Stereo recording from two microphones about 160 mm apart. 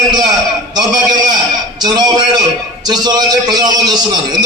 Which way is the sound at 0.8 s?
25° right (ahead or behind).